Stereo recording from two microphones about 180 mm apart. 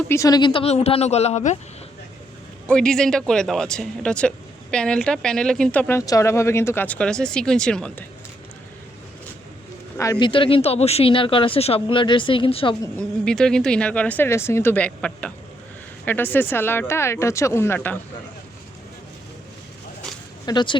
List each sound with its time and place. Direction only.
0.1 s speech: 20° left (ahead or behind); by 1.5 s 40° left (ahead or behind)
2.6 s speech: 5° left (ahead or behind)
10.0 s speech: 20° left (ahead or behind)
13.2 s speech: 5° left (ahead or behind)
20.4 s speech: 25° left (ahead or behind)